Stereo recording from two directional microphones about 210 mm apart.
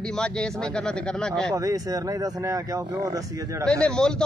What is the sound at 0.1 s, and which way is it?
A man's voice, 5° left (ahead or behind).